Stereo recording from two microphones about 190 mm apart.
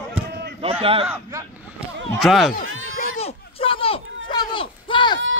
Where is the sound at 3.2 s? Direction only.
30° left (ahead or behind).